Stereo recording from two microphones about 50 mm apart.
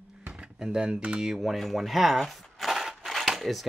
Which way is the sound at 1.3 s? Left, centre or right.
Centre.